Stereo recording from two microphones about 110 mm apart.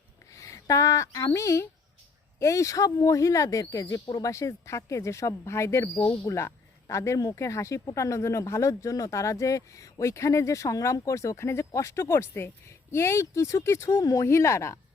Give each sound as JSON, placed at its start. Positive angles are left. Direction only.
{"t": 0.3, "sound": "speech", "side_deg": 30}